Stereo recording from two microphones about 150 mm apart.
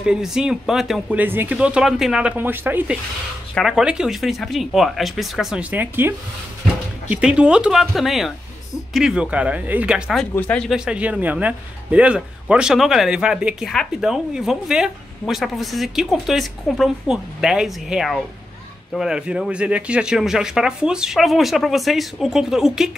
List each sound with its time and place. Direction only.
0.0 s speech: 5° right (ahead or behind)
1.1 s speech: 15° right (ahead or behind)
3.5 s speech: centre (ahead or behind)
10.3 s speech: 10° left (ahead or behind)
10.7 s speech: 5° right (ahead or behind)